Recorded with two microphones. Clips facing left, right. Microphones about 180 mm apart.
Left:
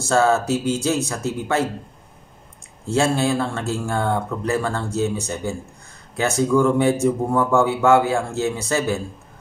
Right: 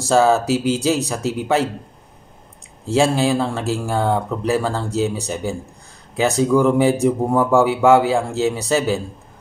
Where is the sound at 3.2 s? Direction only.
15° right (ahead or behind).